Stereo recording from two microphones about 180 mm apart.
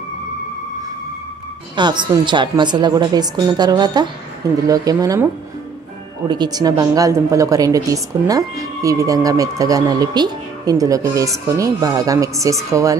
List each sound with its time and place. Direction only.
1.8 s a woman's voice: 25° right (ahead or behind)